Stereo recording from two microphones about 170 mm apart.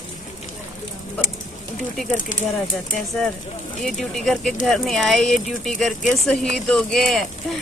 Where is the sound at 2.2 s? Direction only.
50° left (ahead or behind).